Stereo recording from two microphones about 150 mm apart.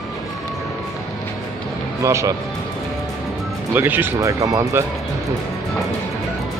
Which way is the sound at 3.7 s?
15° right (ahead or behind).